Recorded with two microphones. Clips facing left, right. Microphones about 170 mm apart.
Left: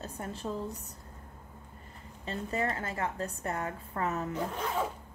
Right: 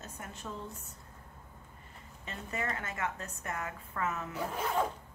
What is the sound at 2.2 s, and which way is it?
A woman's voice, 30° left (ahead or behind).